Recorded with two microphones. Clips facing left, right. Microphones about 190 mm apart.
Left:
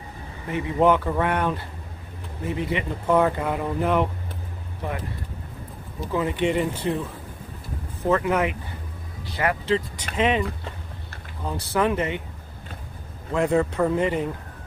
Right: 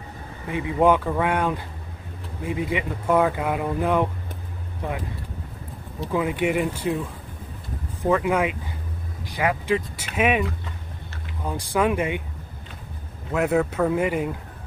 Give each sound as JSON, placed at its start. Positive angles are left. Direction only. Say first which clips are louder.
{"t": 0.5, "sound": "speech", "louder": "even", "side_deg": -15}
{"t": 6.1, "sound": "speech", "louder": "even", "side_deg": -10}
{"t": 8.1, "sound": "speech", "louder": "right 1 dB", "side_deg": -10}
{"t": 11.4, "sound": "speech", "louder": "right 1 dB", "side_deg": -10}
{"t": 13.3, "sound": "speech", "louder": "even", "side_deg": -5}